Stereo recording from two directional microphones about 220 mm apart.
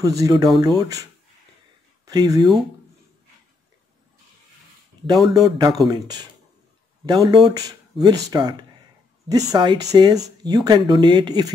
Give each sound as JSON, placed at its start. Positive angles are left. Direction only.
{"t": 0.0, "sound": "speech", "side_deg": -15}
{"t": 2.0, "sound": "speech", "side_deg": -20}
{"t": 5.0, "sound": "speech", "side_deg": -15}